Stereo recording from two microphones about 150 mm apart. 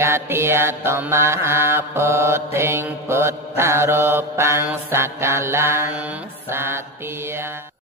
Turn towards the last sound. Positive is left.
turn(degrees=-15)  # may be behind; listen again after turning